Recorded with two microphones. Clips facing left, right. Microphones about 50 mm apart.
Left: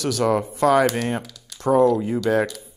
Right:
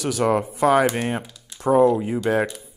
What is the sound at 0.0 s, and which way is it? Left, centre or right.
Speech, centre.